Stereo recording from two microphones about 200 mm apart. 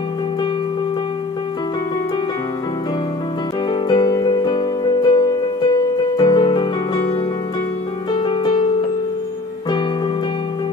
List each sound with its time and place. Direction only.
3.8 s music: 20° left (ahead or behind)
8.1 s music: 25° left (ahead or behind)